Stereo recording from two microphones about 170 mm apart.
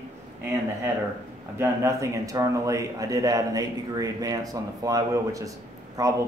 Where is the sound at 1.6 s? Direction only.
15° right (ahead or behind).